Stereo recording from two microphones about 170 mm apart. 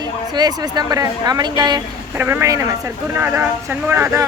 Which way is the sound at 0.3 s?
25° right (ahead or behind).